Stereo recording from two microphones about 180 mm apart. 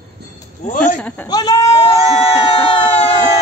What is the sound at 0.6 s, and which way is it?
Speech, 40° left (ahead or behind).